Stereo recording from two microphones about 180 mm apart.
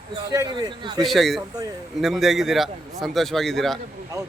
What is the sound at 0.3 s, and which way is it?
Speech, 15° right (ahead or behind).